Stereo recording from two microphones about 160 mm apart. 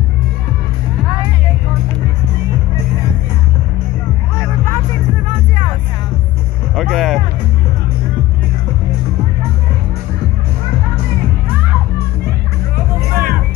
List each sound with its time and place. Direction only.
6.7 s music: centre (ahead or behind)
13.1 s music: 65° right (ahead or behind)